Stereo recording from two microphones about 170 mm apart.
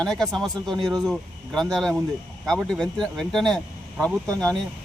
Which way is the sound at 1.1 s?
Centre (ahead or behind).